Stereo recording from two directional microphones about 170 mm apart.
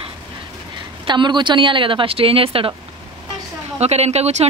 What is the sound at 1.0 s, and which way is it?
Speech, 25° right (ahead or behind).